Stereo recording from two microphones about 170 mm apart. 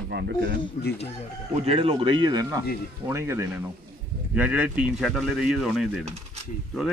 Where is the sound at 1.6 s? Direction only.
35° right (ahead or behind); by 5.9 s centre (ahead or behind).